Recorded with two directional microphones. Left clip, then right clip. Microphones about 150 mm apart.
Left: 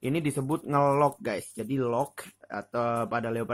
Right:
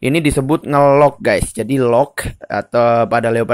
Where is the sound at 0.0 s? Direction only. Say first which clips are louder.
Right 14 dB; 30° right (ahead or behind).